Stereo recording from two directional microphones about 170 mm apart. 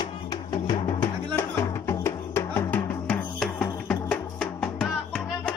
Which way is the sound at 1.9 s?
15° left (ahead or behind).